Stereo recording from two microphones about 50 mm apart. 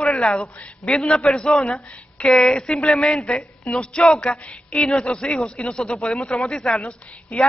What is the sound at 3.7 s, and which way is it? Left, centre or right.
A man's voice, centre.